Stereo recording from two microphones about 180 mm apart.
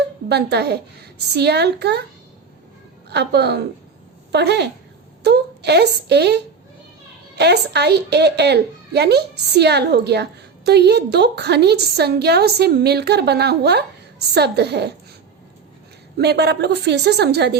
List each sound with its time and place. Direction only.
0.3 s a woman's voice: 65° right (ahead or behind)
3.1 s a woman's voice: 65° right (ahead or behind)
16.1 s a woman's voice: 65° right (ahead or behind)